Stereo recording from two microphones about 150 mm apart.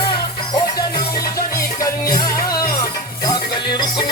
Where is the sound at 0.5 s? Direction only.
25° left (ahead or behind).